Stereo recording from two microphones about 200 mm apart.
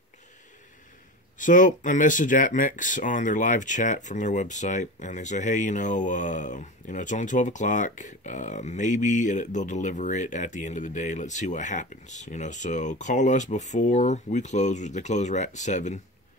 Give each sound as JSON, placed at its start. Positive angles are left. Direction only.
{"t": 1.4, "sound": "speech", "side_deg": 40}